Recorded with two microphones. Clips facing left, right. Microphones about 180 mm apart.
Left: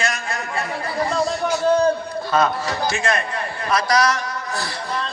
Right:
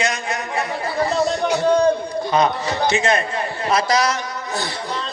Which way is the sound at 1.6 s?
15° right (ahead or behind).